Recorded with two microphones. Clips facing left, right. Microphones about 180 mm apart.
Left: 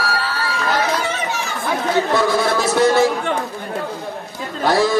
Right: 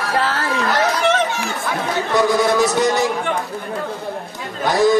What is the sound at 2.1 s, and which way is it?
Speech, 15° right (ahead or behind).